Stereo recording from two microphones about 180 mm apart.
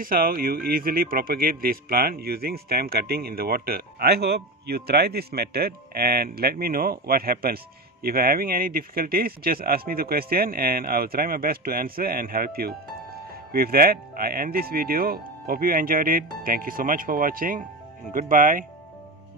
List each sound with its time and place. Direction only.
0.0 s speech: 55° right (ahead or behind)